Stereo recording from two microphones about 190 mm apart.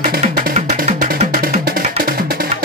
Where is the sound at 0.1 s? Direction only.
50° right (ahead or behind).